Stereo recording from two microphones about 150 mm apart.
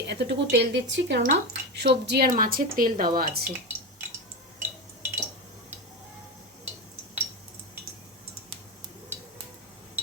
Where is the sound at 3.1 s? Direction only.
90° right.